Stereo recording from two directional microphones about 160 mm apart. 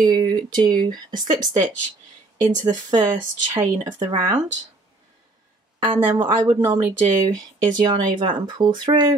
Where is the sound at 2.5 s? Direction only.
50° right (ahead or behind).